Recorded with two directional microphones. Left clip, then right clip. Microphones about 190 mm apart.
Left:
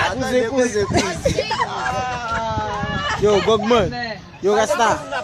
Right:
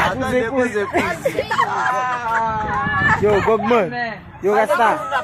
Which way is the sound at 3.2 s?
15° left (ahead or behind).